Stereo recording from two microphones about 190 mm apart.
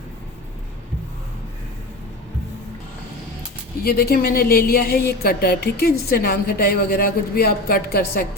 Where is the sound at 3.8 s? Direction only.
55° left (ahead or behind).